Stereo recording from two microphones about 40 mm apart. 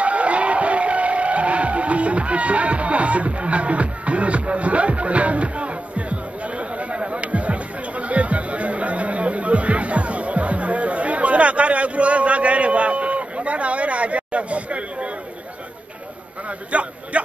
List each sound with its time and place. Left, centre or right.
0.0 s music: right
16.4 s a man's voice: right